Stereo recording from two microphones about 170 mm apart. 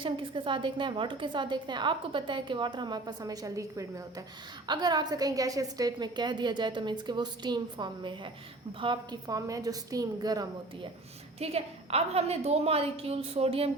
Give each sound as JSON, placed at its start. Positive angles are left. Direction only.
{"t": 0.0, "sound": "a woman's voice", "side_deg": -30}
{"t": 11.3, "sound": "a woman's voice", "side_deg": -35}